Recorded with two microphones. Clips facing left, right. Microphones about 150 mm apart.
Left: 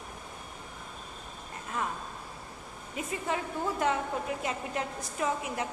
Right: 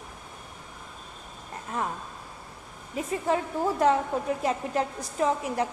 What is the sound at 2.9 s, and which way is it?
A woman's voice, 35° right (ahead or behind).